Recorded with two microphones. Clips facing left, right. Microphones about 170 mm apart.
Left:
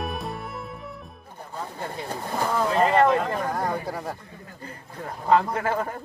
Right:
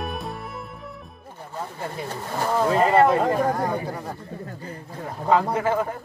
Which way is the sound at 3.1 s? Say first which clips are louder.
Right 3 dB; 10° right (ahead or behind).